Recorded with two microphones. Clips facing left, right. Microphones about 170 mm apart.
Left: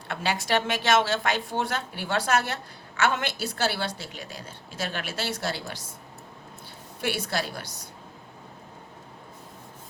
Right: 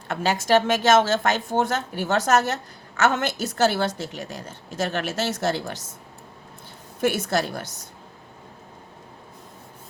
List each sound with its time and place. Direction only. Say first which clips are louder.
0.1 s speech: right 6 dB; 45° right (ahead or behind)
7.0 s speech: right 6 dB; 45° right (ahead or behind)